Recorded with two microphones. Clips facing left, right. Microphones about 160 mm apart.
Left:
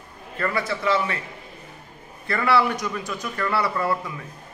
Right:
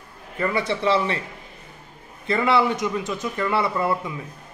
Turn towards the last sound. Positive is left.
turn(degrees=-20)  # may be behind; listen again after turning